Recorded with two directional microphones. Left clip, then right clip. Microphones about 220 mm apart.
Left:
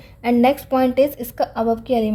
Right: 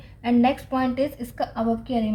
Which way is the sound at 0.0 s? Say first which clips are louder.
Left 5 dB; 45° left (ahead or behind).